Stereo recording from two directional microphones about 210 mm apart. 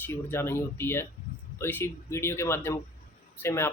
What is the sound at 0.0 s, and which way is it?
Speech, 10° left (ahead or behind).